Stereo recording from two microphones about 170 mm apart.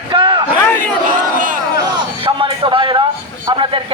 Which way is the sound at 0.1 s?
30° right (ahead or behind).